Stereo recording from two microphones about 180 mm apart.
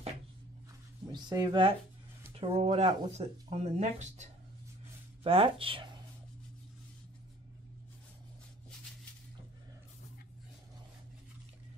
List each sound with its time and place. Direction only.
1.1 s speech: 25° right (ahead or behind)